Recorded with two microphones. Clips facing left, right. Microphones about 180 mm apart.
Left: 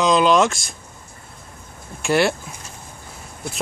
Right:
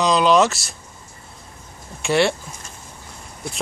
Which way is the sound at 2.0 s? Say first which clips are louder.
Even; centre (ahead or behind).